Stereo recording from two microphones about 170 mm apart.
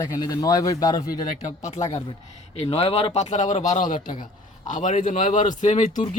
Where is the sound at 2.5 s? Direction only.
35° left (ahead or behind).